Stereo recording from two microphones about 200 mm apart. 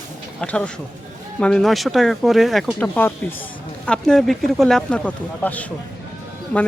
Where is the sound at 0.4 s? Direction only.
5° left (ahead or behind).